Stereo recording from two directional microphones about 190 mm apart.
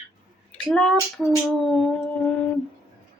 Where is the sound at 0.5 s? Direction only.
5° left (ahead or behind).